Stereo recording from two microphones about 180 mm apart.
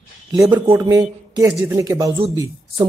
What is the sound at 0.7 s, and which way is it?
Speech, 20° right (ahead or behind).